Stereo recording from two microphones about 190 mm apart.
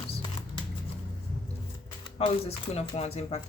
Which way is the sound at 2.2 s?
30° left (ahead or behind).